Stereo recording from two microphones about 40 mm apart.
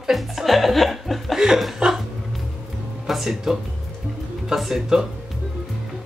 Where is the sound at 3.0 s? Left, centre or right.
Centre.